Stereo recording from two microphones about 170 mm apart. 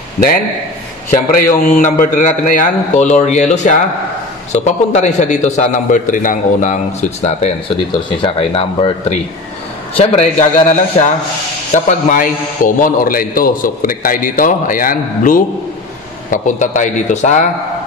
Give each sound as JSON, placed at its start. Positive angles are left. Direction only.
{"t": 1.7, "sound": "a man's voice", "side_deg": 45}
{"t": 8.2, "sound": "speech", "side_deg": 30}
{"t": 9.9, "sound": "a man's voice", "side_deg": 40}